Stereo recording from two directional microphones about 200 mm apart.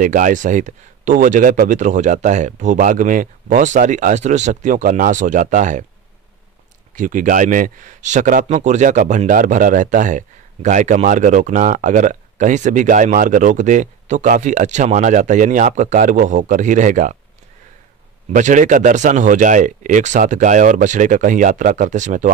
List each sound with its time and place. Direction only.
0.0 s speech: 40° right (ahead or behind)
7.0 s speech: 40° right (ahead or behind)
18.3 s speech: 40° right (ahead or behind)